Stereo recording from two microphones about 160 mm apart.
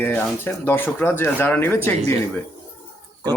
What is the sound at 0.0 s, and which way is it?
Speech, 15° left (ahead or behind).